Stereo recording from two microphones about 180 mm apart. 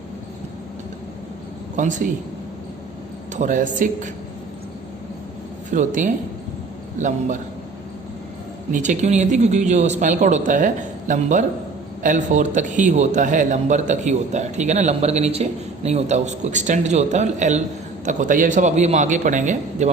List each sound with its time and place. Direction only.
1.7 s a man's voice: 45° right (ahead or behind)
3.3 s a man's voice: 45° right (ahead or behind)
5.7 s a man's voice: 45° right (ahead or behind)
8.7 s a man's voice: 40° right (ahead or behind)